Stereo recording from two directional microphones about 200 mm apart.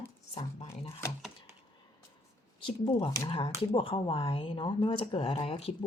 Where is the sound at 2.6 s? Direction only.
20° left (ahead or behind).